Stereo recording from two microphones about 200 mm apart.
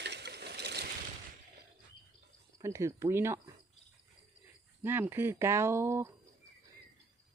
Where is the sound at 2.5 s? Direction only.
15° right (ahead or behind).